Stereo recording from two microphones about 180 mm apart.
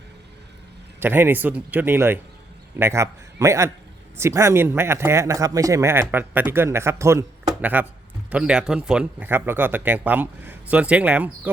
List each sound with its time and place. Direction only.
0.9 s a man's voice: 10° right (ahead or behind)